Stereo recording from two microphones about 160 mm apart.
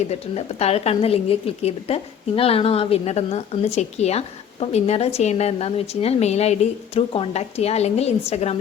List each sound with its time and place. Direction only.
0.1 s a woman's voice: 40° left (ahead or behind)